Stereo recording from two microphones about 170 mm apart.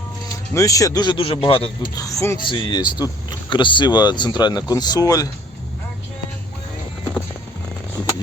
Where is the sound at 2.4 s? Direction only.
30° left (ahead or behind).